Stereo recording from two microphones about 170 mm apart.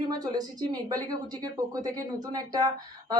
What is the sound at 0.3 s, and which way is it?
Speech, 20° right (ahead or behind).